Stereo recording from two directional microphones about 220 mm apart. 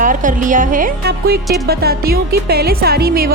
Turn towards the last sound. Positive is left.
turn(degrees=-45)  # may be behind; listen again after turning